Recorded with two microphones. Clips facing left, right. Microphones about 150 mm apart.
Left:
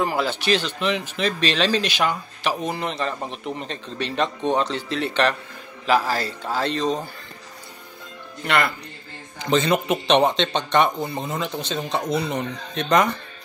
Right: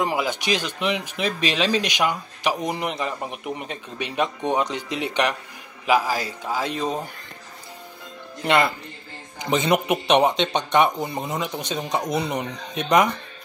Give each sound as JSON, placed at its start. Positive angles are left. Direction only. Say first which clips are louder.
{"t": 0.0, "sound": "speech", "louder": "left 1 dB", "side_deg": -15}
{"t": 8.5, "sound": "speech", "louder": "right 2 dB", "side_deg": -20}